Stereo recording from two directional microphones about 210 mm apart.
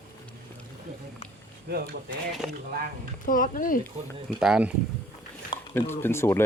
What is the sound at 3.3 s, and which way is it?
Speech, 40° left (ahead or behind).